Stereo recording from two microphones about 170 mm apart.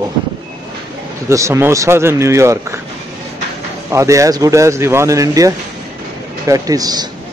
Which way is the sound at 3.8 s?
20° right (ahead or behind).